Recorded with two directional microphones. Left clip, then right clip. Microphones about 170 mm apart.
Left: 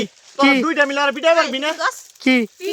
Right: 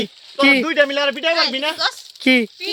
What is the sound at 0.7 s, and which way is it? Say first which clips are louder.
Speech: even; 25° left (ahead or behind).